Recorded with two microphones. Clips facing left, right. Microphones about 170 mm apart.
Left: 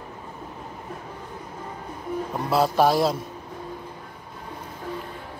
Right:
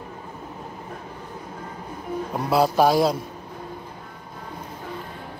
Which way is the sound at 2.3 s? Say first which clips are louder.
Right 2 dB; centre (ahead or behind).